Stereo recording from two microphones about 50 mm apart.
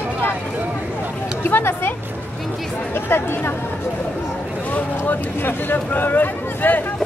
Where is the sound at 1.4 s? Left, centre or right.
Left.